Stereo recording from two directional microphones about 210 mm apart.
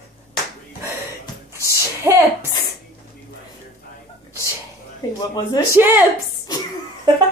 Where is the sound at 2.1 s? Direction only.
10° right (ahead or behind).